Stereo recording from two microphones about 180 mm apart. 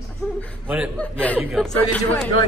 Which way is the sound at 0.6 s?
5° right (ahead or behind).